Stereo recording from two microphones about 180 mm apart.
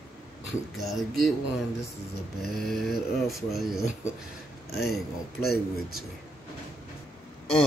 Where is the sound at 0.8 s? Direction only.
Centre (ahead or behind).